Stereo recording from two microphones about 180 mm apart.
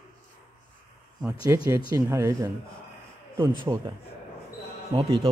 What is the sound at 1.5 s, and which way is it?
Speech, 15° right (ahead or behind).